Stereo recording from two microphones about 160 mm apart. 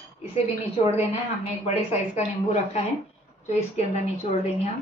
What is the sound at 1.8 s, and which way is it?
A woman's voice, 45° left (ahead or behind).